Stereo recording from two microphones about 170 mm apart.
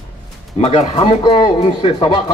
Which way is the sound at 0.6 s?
40° left (ahead or behind).